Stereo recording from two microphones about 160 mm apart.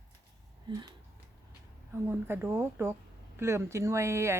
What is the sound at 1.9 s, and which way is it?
Speech, 15° right (ahead or behind).